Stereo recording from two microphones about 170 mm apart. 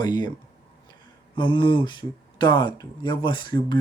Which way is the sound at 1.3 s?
25° left (ahead or behind).